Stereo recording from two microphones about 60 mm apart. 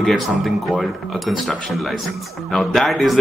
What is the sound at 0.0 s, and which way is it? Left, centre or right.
A man's voice, centre.